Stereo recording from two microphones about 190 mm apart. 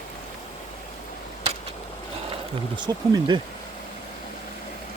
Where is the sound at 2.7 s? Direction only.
25° right (ahead or behind).